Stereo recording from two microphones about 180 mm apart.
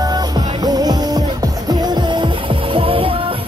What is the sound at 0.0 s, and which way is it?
Music, 20° right (ahead or behind).